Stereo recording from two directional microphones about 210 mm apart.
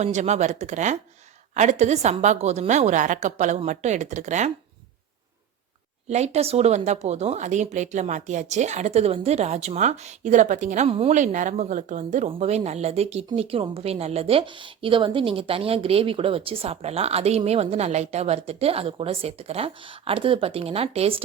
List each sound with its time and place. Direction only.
0.0 s a woman's voice: 35° right (ahead or behind)
6.1 s speech: 30° right (ahead or behind)